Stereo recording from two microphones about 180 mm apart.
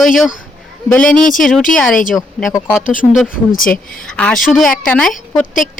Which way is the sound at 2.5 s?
15° left (ahead or behind).